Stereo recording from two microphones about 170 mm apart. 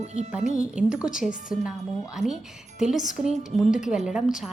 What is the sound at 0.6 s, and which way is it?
A woman's voice, 5° right (ahead or behind).